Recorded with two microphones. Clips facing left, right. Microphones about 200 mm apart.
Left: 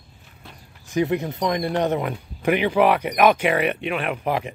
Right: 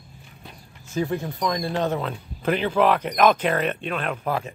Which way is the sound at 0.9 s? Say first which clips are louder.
Left 4 dB; 20° left (ahead or behind).